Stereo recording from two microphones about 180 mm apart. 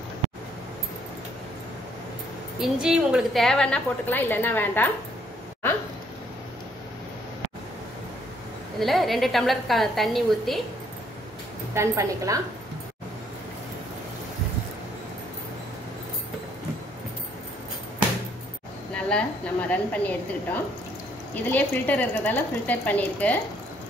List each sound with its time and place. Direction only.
2.6 s a woman's voice: 5° right (ahead or behind)
8.7 s a woman's voice: centre (ahead or behind)
11.7 s a woman's voice: 15° right (ahead or behind)
19.0 s speech: 5° left (ahead or behind)
21.5 s speech: 10° left (ahead or behind)